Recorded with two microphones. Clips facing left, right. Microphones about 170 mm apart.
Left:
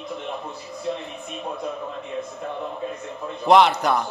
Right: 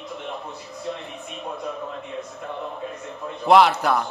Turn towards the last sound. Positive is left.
turn(degrees=-5)  # may be behind; listen again after turning